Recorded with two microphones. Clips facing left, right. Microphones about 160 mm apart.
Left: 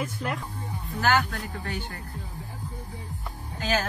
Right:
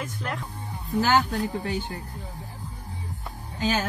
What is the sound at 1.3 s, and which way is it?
Speech, 15° right (ahead or behind).